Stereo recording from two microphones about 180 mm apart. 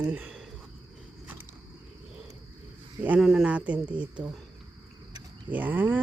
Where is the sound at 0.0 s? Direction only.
10° right (ahead or behind).